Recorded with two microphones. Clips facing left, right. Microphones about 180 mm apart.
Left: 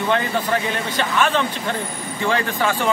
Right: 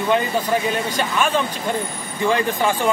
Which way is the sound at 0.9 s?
10° right (ahead or behind).